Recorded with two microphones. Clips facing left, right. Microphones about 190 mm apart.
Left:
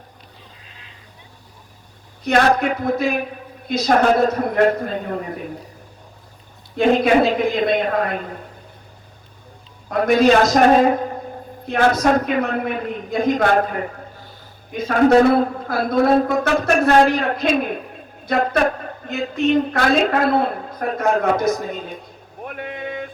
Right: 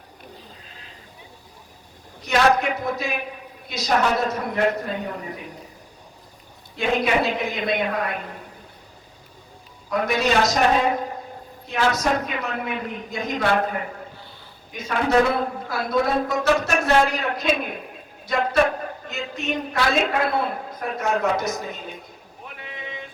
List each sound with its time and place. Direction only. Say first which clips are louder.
2.2 s a woman's voice: left 3 dB; 55° left (ahead or behind)
6.7 s a woman's voice: left 7 dB; 50° left (ahead or behind)
9.9 s a woman's voice: left 7 dB; 50° left (ahead or behind)
14.8 s a woman's voice: left 7 dB; 50° left (ahead or behind)
22.4 s vehicle: left 9 dB; 55° left (ahead or behind)